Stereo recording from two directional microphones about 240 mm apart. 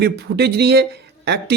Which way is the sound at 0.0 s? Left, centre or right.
Right.